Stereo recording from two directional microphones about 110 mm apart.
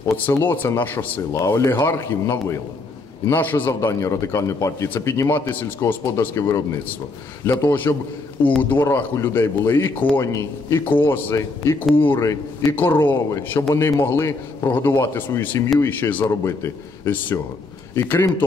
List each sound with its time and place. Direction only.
0.3 s speech: 20° left (ahead or behind)
4.8 s speech: 20° left (ahead or behind)
10.2 s speech: 30° left (ahead or behind)